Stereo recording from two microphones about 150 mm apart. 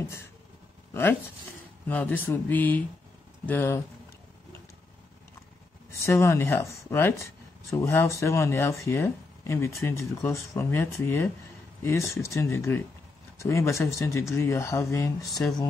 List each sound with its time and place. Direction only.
1.9 s speech: 10° left (ahead or behind)
5.9 s speech: 20° left (ahead or behind)